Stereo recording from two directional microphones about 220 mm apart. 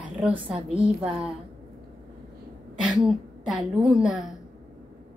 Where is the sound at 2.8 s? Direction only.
Centre (ahead or behind).